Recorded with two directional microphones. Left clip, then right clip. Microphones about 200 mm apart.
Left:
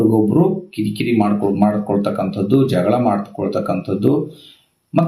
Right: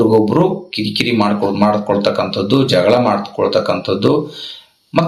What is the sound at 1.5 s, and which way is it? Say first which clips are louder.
Speech: right 4 dB; 10° right (ahead or behind).